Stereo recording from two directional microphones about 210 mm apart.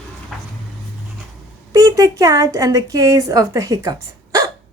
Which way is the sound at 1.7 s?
15° right (ahead or behind).